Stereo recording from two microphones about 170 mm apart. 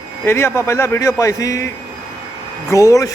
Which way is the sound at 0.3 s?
15° left (ahead or behind).